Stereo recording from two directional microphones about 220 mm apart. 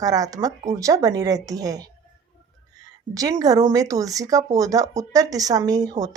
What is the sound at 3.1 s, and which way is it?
A woman's voice, 15° right (ahead or behind).